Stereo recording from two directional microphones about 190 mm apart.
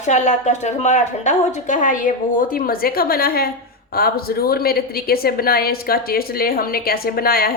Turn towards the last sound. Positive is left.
turn(degrees=50)  # may be behind; listen again after turning